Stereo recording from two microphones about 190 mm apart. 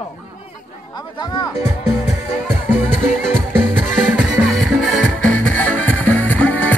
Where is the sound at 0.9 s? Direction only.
20° left (ahead or behind).